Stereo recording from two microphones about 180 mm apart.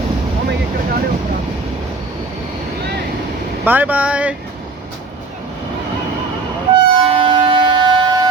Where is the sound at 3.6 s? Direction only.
10° right (ahead or behind).